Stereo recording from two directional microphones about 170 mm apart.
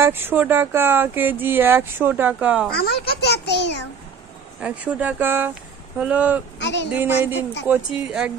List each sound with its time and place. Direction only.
0.0 s speech: 10° right (ahead or behind)
2.7 s a child's voice: 65° left (ahead or behind); by 3.8 s 90° left
4.6 s speech: 10° right (ahead or behind)
6.6 s speech: 90° left
6.9 s speech: 10° right (ahead or behind)